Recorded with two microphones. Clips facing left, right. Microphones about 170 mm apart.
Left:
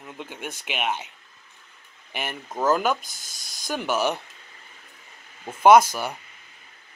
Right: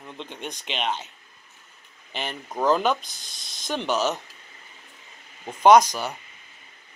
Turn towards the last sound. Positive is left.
turn(degrees=10)  # may be behind; listen again after turning